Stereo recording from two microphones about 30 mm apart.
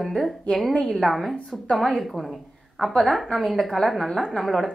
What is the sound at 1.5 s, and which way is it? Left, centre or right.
Speech, centre.